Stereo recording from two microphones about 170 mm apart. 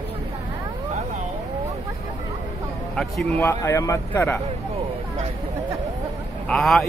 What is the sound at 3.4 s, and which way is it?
Speech, 15° left (ahead or behind).